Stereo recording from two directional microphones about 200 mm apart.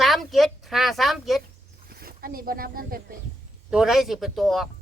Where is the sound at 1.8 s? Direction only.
50° right (ahead or behind).